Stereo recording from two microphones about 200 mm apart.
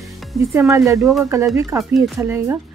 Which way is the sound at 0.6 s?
15° right (ahead or behind).